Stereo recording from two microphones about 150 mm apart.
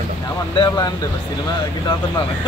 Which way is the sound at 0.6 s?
30° left (ahead or behind).